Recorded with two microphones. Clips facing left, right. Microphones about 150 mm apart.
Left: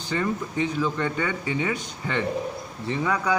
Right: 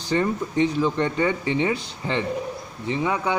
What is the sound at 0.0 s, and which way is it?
Speech, 35° right (ahead or behind).